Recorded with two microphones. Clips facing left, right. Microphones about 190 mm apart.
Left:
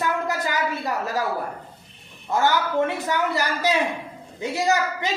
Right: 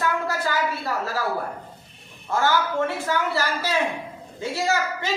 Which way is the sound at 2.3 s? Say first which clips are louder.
Left 1 dB; 20° left (ahead or behind).